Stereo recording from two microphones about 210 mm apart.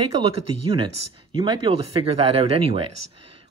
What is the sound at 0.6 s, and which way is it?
Speech, 20° right (ahead or behind).